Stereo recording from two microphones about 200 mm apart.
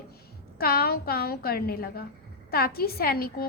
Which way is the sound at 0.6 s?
50° left (ahead or behind).